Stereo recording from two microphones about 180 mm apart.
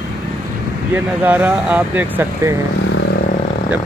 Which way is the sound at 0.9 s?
10° right (ahead or behind).